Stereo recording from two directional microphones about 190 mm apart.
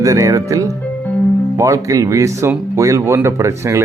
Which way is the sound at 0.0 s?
15° right (ahead or behind).